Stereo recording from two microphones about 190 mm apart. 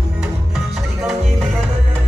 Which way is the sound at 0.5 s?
5° right (ahead or behind).